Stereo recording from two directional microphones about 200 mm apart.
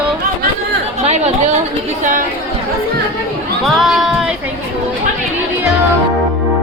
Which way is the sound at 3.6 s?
Centre (ahead or behind).